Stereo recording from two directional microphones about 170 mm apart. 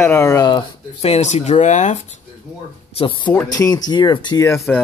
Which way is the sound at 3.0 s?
30° left (ahead or behind).